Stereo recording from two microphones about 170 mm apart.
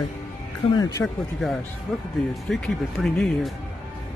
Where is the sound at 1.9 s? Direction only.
Centre (ahead or behind).